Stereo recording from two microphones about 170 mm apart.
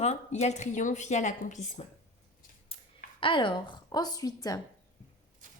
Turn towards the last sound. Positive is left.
turn(degrees=20)  # may be behind; listen again after turning